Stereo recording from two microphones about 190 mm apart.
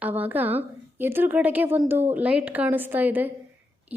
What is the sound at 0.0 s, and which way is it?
A woman's voice, 10° right (ahead or behind).